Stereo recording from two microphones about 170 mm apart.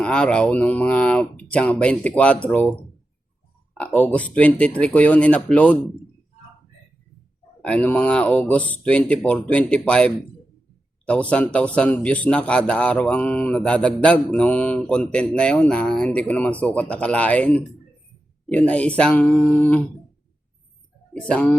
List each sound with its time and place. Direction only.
0.0 s speech: 5° left (ahead or behind)
7.6 s speech: 10° left (ahead or behind)
21.1 s speech: 5° left (ahead or behind)